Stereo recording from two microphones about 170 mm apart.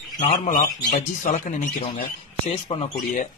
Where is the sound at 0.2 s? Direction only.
45° left (ahead or behind).